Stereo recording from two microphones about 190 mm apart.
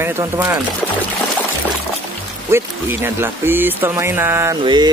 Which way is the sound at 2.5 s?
10° right (ahead or behind).